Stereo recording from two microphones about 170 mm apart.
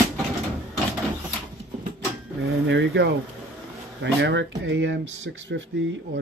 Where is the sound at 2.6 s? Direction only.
90° right.